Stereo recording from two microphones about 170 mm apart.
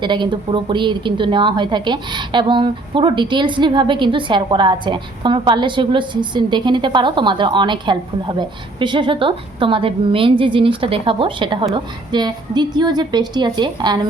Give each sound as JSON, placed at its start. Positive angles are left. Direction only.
{"t": 0.0, "sound": "a woman's voice", "side_deg": -25}